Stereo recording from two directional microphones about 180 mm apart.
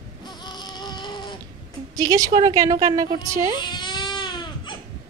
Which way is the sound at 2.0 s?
20° right (ahead or behind).